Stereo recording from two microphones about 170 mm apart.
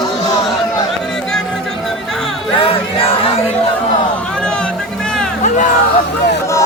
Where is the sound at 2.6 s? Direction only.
35° left (ahead or behind).